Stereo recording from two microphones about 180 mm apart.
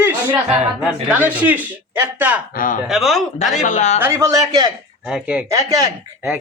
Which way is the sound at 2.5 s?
50° left (ahead or behind).